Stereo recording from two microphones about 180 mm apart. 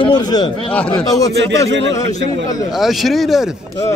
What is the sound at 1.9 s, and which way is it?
Speech, 40° left (ahead or behind).